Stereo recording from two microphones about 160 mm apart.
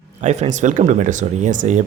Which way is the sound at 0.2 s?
45° right (ahead or behind).